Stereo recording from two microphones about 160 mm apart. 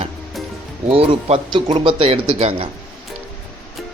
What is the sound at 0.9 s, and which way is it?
A man's voice, 35° right (ahead or behind).